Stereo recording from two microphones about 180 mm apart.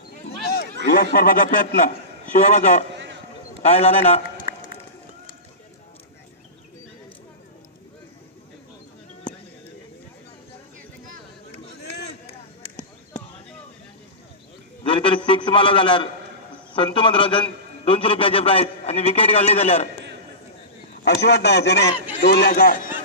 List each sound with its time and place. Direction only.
0.8 s a man's voice: 55° left (ahead or behind); by 4.2 s 35° left (ahead or behind)
14.8 s a man's voice: 30° left (ahead or behind)
21.0 s a man's voice: 70° left (ahead or behind)